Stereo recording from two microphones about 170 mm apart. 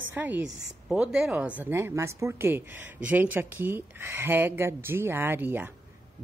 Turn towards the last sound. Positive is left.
turn(degrees=-10)  # may be behind; listen again after turning